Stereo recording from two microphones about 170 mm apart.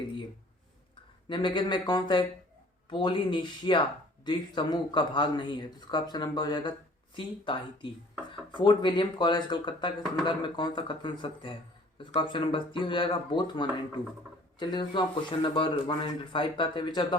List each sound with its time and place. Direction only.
1.3 s a man's voice: 30° left (ahead or behind)